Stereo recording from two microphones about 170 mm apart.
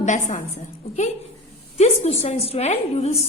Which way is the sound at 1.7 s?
40° left (ahead or behind).